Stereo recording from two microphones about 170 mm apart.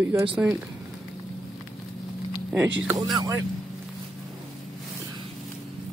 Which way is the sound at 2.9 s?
20° right (ahead or behind).